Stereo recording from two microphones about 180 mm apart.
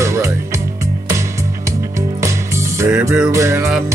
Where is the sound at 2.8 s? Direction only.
15° right (ahead or behind).